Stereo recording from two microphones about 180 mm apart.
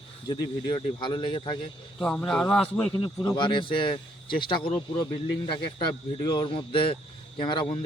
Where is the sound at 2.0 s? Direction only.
5° left (ahead or behind).